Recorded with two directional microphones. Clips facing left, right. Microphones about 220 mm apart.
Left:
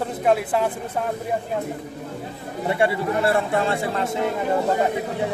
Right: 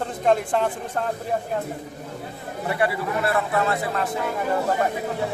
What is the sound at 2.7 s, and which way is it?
A man's voice, 25° left (ahead or behind).